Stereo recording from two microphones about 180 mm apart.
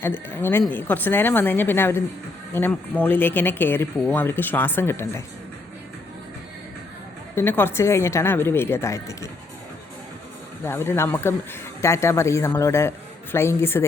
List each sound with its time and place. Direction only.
0.0 s a woman's voice: 10° left (ahead or behind)
7.3 s a woman's voice: 10° left (ahead or behind)
10.6 s a woman's voice: 15° left (ahead or behind)